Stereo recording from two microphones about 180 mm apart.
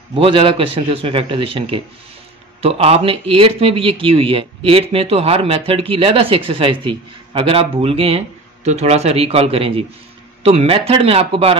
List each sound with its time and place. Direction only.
0.1 s a man's voice: 30° right (ahead or behind)